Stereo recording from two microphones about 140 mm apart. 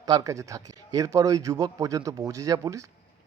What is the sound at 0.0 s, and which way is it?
Speech, 25° right (ahead or behind).